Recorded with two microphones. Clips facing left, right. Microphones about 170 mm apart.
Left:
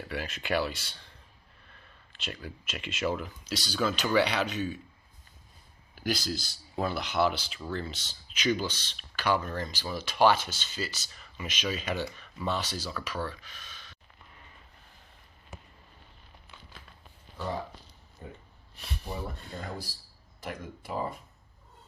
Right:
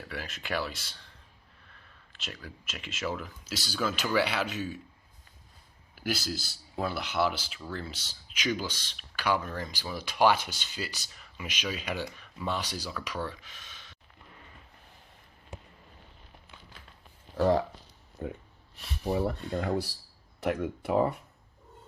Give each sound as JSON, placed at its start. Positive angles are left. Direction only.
{"t": 0.1, "sound": "speech", "side_deg": 0}
{"t": 2.1, "sound": "speech", "side_deg": 0}
{"t": 6.0, "sound": "speech", "side_deg": -5}
{"t": 13.2, "sound": "a sound", "side_deg": -20}
{"t": 17.3, "sound": "speech", "side_deg": -90}
{"t": 18.2, "sound": "speech", "side_deg": -65}
{"t": 18.8, "sound": "a sound", "side_deg": 0}
{"t": 19.5, "sound": "speech", "side_deg": -70}